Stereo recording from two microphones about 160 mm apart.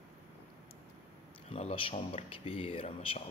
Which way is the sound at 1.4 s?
40° left (ahead or behind).